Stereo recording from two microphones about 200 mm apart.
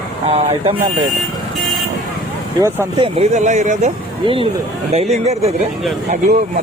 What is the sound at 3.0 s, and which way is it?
Speech, 30° right (ahead or behind).